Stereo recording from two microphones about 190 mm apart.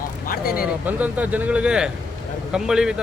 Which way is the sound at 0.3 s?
50° left (ahead or behind).